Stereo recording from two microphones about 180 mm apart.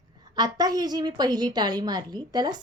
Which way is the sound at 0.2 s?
20° right (ahead or behind).